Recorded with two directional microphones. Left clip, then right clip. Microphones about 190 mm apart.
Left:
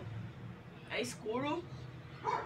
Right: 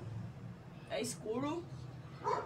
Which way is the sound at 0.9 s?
Centre (ahead or behind).